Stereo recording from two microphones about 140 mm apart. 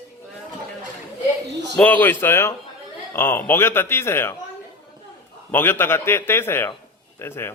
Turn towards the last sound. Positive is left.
turn(degrees=15)  # may be behind; listen again after turning